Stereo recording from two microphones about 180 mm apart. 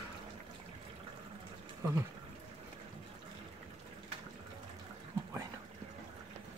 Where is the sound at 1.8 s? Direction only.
15° right (ahead or behind).